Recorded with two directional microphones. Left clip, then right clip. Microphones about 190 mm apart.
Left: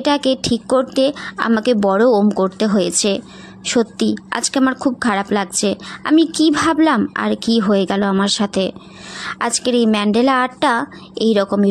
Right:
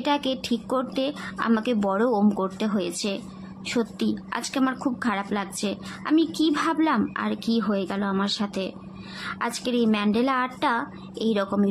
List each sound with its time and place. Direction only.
0.0 s a woman's voice: 35° left (ahead or behind)